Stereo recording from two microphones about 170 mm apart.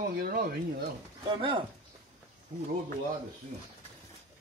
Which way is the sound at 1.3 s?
30° right (ahead or behind).